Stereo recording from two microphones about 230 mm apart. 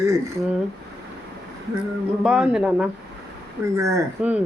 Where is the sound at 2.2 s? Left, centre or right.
Centre.